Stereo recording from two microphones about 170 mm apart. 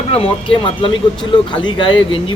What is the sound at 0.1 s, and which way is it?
Speech, 35° left (ahead or behind).